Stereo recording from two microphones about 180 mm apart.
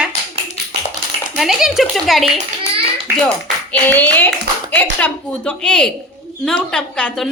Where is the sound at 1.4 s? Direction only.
Centre (ahead or behind).